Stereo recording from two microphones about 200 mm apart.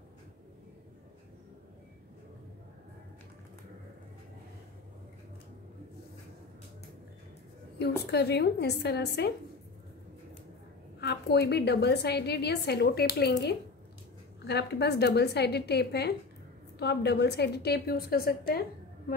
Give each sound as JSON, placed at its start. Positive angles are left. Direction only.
{"t": 8.1, "sound": "a woman's voice", "side_deg": 55}
{"t": 11.0, "sound": "a woman's voice", "side_deg": 55}